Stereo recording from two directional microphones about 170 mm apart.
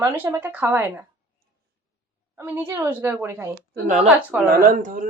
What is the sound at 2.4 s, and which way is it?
A woman's voice, 10° right (ahead or behind).